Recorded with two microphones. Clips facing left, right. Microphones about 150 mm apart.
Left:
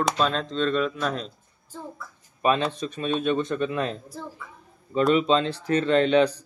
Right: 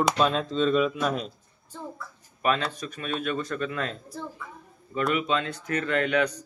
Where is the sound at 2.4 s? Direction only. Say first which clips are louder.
Left 3 dB; 20° left (ahead or behind).